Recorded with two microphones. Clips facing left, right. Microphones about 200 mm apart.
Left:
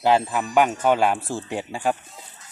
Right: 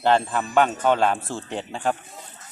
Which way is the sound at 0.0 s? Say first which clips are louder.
Left 1 dB; 5° left (ahead or behind).